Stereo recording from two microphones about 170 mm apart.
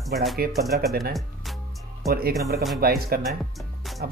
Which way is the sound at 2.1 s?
65° right (ahead or behind).